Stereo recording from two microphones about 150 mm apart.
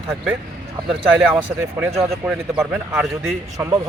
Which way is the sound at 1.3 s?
15° right (ahead or behind).